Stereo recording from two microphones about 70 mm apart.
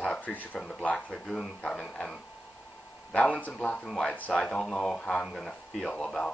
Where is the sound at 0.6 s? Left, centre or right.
Centre.